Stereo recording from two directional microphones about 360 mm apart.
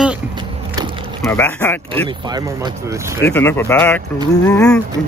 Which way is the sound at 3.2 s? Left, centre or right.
Centre.